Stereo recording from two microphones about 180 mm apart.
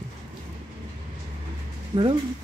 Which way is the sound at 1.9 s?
30° right (ahead or behind).